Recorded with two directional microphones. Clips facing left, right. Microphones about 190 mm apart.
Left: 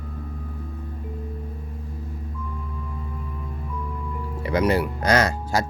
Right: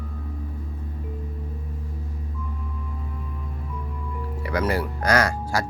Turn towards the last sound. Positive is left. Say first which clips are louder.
# left 1 dB
turn(degrees=20)  # may be behind; listen again after turning